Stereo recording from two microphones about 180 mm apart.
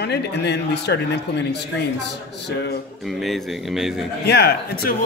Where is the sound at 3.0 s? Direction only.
Centre (ahead or behind).